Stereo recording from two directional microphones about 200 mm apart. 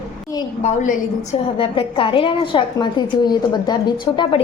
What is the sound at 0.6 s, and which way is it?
A woman's voice, 35° left (ahead or behind).